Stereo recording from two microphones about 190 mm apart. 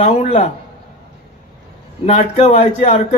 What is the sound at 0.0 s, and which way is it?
Speech, 35° left (ahead or behind).